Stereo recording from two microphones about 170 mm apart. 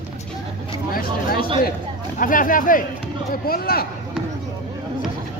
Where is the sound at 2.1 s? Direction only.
55° left (ahead or behind).